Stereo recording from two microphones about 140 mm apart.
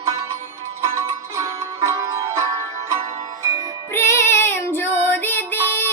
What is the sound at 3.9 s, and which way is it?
Music, 20° left (ahead or behind).